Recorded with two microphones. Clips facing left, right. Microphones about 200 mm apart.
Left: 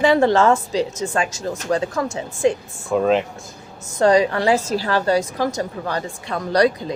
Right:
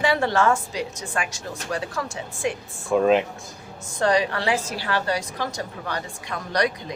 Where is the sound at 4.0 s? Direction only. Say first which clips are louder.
Left 6 dB; 20° left (ahead or behind).